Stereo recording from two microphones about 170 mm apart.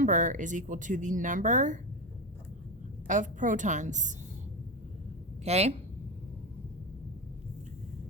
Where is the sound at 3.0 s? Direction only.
45° right (ahead or behind).